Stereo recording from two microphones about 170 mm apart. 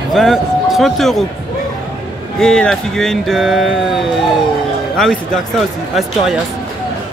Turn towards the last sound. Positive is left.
turn(degrees=0)  # may be behind; listen again after turning